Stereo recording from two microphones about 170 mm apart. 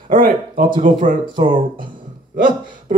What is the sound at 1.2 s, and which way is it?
Speech, 30° right (ahead or behind).